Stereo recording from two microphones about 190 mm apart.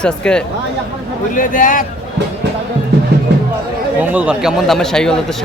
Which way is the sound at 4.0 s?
5° right (ahead or behind).